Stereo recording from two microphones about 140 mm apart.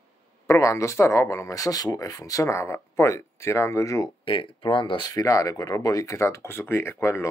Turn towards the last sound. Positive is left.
turn(degrees=20)  # may be behind; listen again after turning